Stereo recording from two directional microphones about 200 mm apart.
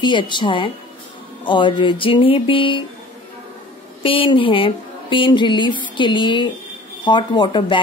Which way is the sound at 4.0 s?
25° left (ahead or behind).